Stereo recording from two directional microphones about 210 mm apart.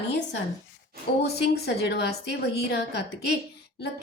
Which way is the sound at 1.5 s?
50° left (ahead or behind).